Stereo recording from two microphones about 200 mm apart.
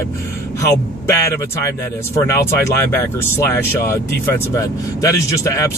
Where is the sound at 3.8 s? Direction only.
10° left (ahead or behind).